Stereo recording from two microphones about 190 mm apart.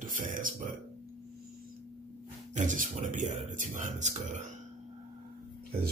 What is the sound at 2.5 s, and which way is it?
Speech, 40° right (ahead or behind).